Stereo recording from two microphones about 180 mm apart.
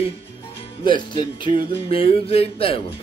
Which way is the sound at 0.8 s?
25° left (ahead or behind).